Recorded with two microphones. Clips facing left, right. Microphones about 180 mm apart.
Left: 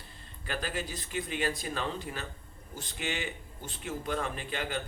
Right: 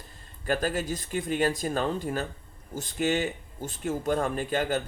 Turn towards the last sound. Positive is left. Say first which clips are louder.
# right 8 dB
turn(degrees=-45)  # may be behind; listen again after turning